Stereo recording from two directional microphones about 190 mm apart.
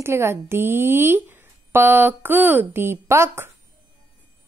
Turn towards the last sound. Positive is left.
turn(degrees=-15)  # may be behind; listen again after turning